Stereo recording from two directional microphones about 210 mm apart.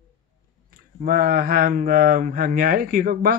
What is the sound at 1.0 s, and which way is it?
Speech, 45° right (ahead or behind).